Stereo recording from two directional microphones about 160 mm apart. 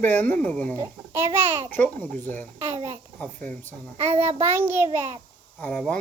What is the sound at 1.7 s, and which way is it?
Speech, 10° left (ahead or behind).